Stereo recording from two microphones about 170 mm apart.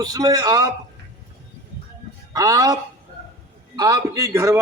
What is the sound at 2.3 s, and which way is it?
Speech, 20° right (ahead or behind).